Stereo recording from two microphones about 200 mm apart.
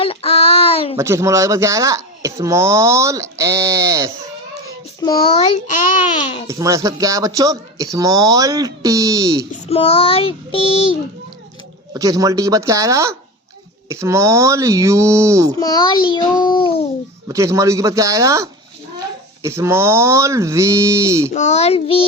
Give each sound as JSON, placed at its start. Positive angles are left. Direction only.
{"t": 0.0, "sound": "child singing", "side_deg": 30}
{"t": 0.9, "sound": "speech", "side_deg": -15}
{"t": 4.9, "sound": "child singing", "side_deg": 25}
{"t": 5.6, "sound": "a child's voice", "side_deg": 40}
{"t": 6.5, "sound": "speech", "side_deg": -15}
{"t": 9.6, "sound": "child singing", "side_deg": 30}
{"t": 11.9, "sound": "speech", "side_deg": -15}
{"t": 15.5, "sound": "child singing", "side_deg": 20}
{"t": 17.2, "sound": "speech", "side_deg": -15}
{"t": 21.3, "sound": "a child's voice", "side_deg": 35}